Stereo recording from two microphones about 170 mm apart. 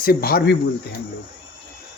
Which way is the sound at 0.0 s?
60° left (ahead or behind).